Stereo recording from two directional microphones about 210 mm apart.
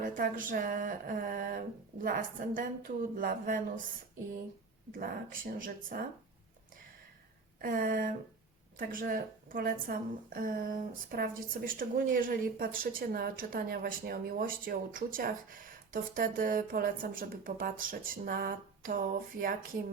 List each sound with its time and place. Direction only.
0.0 s speech: 40° right (ahead or behind)
4.9 s speech: 40° right (ahead or behind)
7.6 s a woman's voice: 40° right (ahead or behind)